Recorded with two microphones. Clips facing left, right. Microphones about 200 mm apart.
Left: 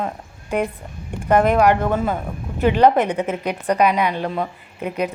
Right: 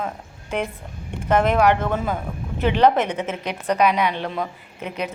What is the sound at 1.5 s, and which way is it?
A woman's voice, 10° left (ahead or behind).